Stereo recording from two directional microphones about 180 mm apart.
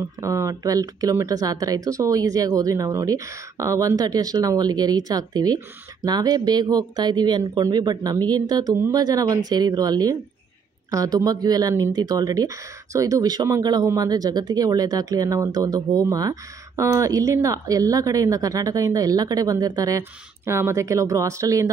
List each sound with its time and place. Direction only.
0.2 s speech: 15° right (ahead or behind)